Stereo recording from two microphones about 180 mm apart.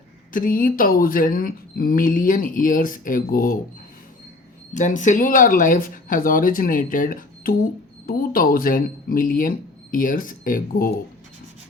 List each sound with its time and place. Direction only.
0.3 s speech: 50° left (ahead or behind)
4.7 s speech: 45° left (ahead or behind)